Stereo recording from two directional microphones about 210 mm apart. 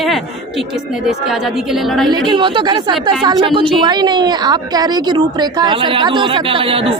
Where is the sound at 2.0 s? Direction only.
20° right (ahead or behind).